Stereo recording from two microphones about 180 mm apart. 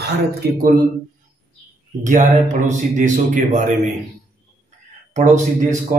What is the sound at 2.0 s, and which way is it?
A man's voice, 45° right (ahead or behind).